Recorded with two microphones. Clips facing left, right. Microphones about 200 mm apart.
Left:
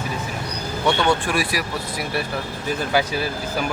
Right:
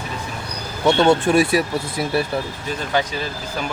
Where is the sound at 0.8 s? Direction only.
25° right (ahead or behind).